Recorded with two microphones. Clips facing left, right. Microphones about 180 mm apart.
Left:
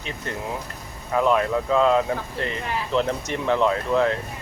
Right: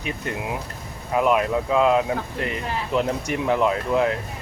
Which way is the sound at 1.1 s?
15° right (ahead or behind).